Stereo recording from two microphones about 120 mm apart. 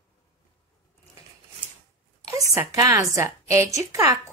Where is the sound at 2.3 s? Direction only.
25° right (ahead or behind).